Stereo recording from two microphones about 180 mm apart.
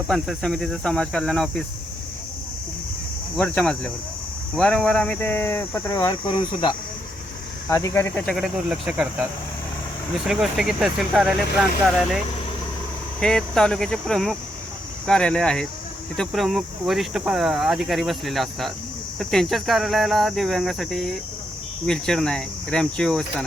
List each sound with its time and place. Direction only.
0.1 s speech: centre (ahead or behind)
3.3 s speech: 10° left (ahead or behind)
6.0 s speech: 25° left (ahead or behind); by 9.2 s 5° right (ahead or behind)
10.2 s speech: centre (ahead or behind)
13.1 s speech: 5° left (ahead or behind)